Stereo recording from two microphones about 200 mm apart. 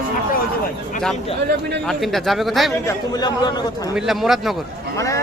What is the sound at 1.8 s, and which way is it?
Speech, centre (ahead or behind).